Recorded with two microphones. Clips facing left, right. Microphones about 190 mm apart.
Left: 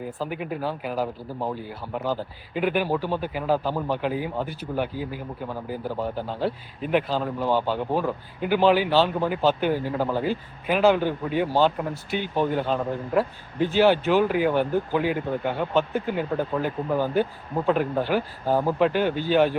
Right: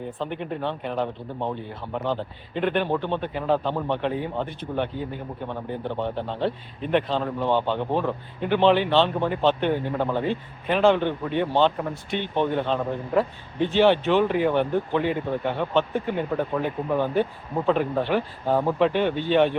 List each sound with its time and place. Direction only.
0.0 s speech: 5° left (ahead or behind)